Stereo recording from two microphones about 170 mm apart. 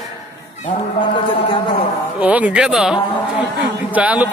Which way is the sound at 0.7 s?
30° left (ahead or behind).